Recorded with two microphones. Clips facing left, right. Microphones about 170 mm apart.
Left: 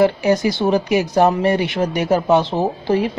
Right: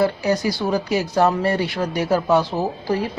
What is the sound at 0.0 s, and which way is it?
Speech, 20° left (ahead or behind).